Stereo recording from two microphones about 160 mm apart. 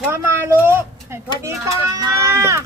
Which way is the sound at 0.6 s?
15° right (ahead or behind).